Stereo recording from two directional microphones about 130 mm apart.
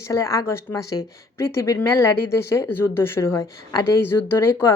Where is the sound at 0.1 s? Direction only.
25° left (ahead or behind).